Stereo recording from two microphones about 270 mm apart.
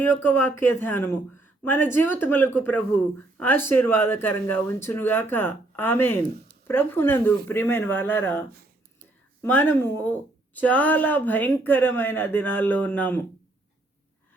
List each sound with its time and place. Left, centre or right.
0.0 s a woman's voice: centre